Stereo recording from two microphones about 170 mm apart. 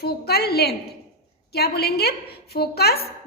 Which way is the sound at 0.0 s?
65° left (ahead or behind).